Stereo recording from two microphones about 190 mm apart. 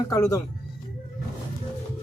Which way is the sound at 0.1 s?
15° left (ahead or behind).